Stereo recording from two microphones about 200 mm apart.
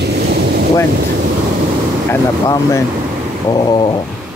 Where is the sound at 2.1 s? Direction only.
15° left (ahead or behind).